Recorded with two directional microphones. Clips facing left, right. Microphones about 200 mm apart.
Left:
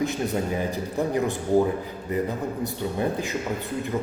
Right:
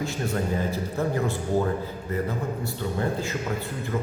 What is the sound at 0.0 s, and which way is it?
A man's voice, 15° left (ahead or behind).